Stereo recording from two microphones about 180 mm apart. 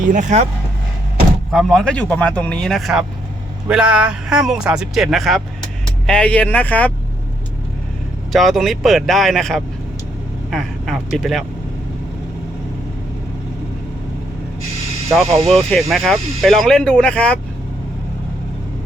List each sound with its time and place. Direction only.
0.1 s speech: 45° right (ahead or behind)
1.5 s speech: centre (ahead or behind)
8.3 s speech: centre (ahead or behind)
10.5 s vehicle: centre (ahead or behind)
15.1 s speech: centre (ahead or behind)